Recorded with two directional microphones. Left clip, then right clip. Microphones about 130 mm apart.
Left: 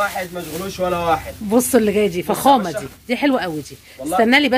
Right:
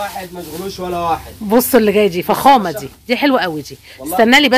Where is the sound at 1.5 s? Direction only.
20° right (ahead or behind).